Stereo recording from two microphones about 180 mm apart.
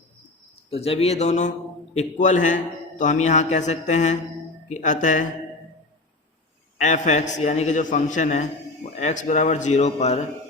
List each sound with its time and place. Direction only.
0.7 s a man's voice: 35° left (ahead or behind)
6.7 s a man's voice: 40° left (ahead or behind)